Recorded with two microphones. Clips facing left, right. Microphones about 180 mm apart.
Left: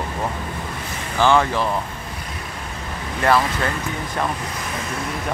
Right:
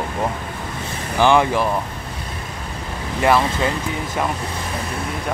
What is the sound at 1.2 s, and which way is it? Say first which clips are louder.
Speech: right 2 dB; 15° right (ahead or behind).